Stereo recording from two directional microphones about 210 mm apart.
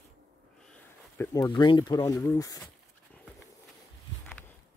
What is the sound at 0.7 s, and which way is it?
Speech, 10° left (ahead or behind).